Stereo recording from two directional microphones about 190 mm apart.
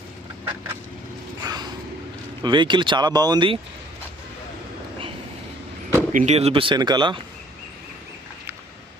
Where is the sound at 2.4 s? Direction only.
25° right (ahead or behind).